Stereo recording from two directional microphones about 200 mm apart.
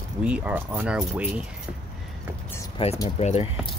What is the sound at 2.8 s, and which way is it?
Speech, 25° left (ahead or behind).